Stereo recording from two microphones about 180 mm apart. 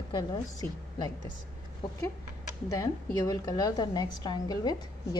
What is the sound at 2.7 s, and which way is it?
A woman's voice, 20° left (ahead or behind).